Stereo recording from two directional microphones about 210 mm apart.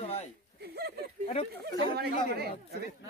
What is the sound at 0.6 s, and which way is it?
Speech, 50° right (ahead or behind).